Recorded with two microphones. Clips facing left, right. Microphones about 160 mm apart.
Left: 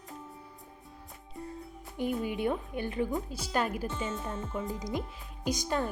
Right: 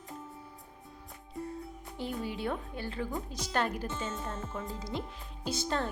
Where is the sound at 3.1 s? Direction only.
5° left (ahead or behind).